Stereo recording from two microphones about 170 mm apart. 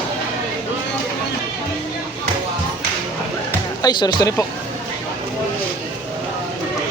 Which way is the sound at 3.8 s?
25° left (ahead or behind).